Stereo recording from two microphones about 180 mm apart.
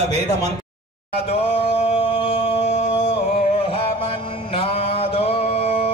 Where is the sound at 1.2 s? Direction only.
35° left (ahead or behind).